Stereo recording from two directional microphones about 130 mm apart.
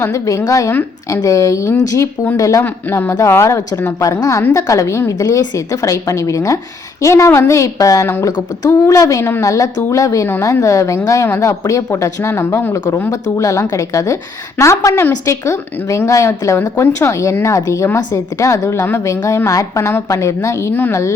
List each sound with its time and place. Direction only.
0.0 s speech: 25° left (ahead or behind)